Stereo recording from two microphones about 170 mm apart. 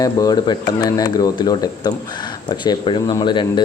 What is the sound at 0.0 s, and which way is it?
Speech, 25° left (ahead or behind).